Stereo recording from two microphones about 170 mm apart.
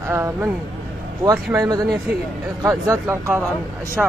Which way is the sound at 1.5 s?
20° right (ahead or behind).